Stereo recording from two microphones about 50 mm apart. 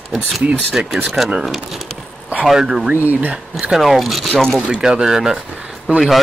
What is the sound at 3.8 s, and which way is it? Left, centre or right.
Speech, centre.